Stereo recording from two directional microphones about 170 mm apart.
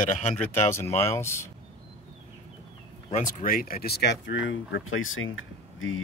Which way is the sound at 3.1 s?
45° left (ahead or behind).